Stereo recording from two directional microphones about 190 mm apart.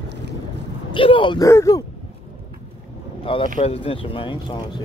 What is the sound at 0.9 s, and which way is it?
Speech, 25° left (ahead or behind).